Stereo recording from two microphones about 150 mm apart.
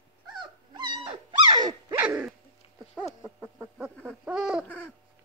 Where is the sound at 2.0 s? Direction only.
15° right (ahead or behind).